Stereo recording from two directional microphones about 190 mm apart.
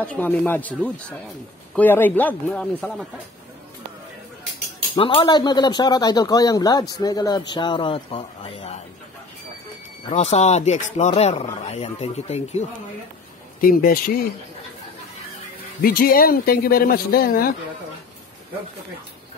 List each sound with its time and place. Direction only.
0.0 s speech: 10° left (ahead or behind)
4.9 s speech: 25° left (ahead or behind)
10.0 s speech: 35° left (ahead or behind)
13.6 s speech: 50° left (ahead or behind)
15.8 s speech: 50° left (ahead or behind)